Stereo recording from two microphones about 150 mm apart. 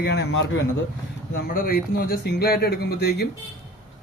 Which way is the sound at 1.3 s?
75° left (ahead or behind).